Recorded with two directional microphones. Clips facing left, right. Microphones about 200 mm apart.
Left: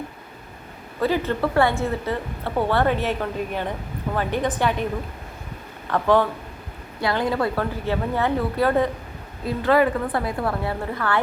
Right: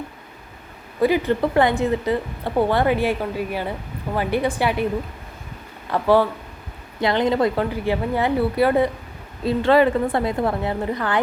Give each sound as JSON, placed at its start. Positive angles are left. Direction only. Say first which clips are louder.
{"t": 0.9, "sound": "a woman's voice", "louder": "right 4 dB", "side_deg": -15}
{"t": 5.9, "sound": "a woman's voice", "louder": "right 2 dB", "side_deg": -10}
{"t": 7.0, "sound": "a woman's voice", "louder": "right 4 dB", "side_deg": -20}
{"t": 9.6, "sound": "a woman's voice", "louder": "right 3 dB", "side_deg": -25}